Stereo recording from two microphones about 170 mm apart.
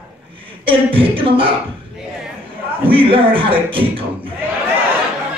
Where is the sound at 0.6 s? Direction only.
30° right (ahead or behind).